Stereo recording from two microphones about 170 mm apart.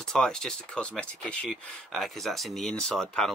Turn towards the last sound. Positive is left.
turn(degrees=5)  # may be behind; listen again after turning